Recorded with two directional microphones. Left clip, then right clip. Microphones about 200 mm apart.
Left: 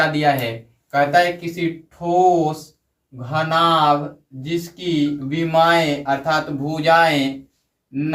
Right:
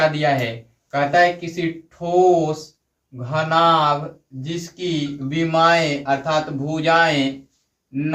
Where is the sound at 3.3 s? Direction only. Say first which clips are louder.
Right 1 dB; 25° right (ahead or behind).